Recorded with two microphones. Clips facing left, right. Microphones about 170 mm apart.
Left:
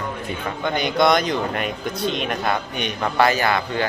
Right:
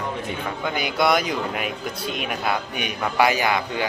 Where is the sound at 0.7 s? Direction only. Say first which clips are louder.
Left 3 dB; 5° right (ahead or behind).